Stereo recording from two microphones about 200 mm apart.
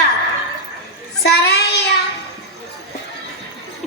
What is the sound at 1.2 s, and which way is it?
Child singing, 55° left (ahead or behind).